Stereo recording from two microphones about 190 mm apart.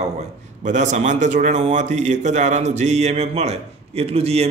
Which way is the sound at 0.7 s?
40° right (ahead or behind).